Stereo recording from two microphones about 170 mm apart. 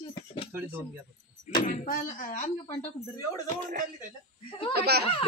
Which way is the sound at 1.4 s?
55° left (ahead or behind).